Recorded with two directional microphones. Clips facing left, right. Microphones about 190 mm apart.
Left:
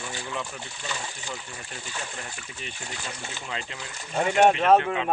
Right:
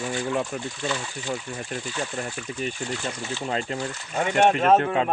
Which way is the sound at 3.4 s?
40° right (ahead or behind).